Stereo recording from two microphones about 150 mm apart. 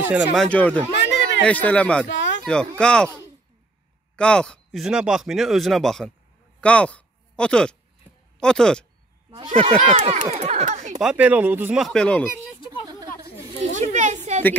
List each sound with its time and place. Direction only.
0.3 s speech: 5° left (ahead or behind)
4.2 s speech: 5° left (ahead or behind)
9.5 s speech: 50° right (ahead or behind)
11.0 s speech: 10° right (ahead or behind)
11.8 s speech: 5° left (ahead or behind)
13.6 s speech: 50° right (ahead or behind)